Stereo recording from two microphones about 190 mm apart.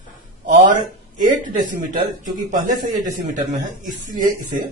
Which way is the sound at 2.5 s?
45° right (ahead or behind).